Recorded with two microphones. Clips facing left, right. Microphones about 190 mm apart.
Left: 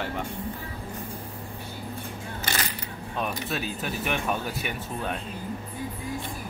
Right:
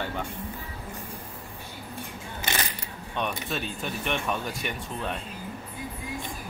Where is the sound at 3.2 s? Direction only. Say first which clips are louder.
Even; 5° left (ahead or behind).